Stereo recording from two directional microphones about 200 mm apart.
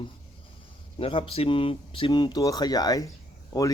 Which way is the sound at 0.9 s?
25° left (ahead or behind).